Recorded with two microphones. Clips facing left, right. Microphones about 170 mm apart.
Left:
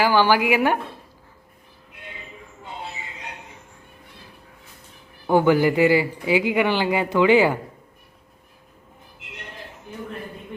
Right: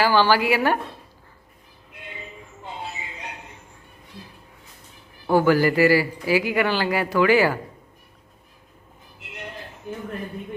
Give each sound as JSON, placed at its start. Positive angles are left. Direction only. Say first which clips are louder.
{"t": 0.0, "sound": "speech", "louder": "left 1 dB", "side_deg": 15}
{"t": 5.2, "sound": "speech", "louder": "left 1 dB", "side_deg": 20}